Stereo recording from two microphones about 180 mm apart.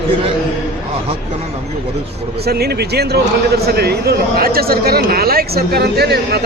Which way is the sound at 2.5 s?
60° right (ahead or behind).